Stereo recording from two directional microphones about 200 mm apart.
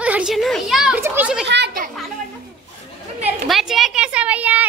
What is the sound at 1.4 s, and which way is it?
Speech, 60° right (ahead or behind).